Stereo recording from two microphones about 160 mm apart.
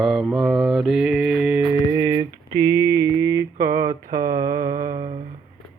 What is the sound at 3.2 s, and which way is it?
Mantra, 20° right (ahead or behind).